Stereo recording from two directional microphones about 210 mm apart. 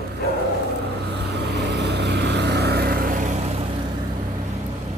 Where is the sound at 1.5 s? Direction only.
55° right (ahead or behind); by 3.6 s 35° right (ahead or behind).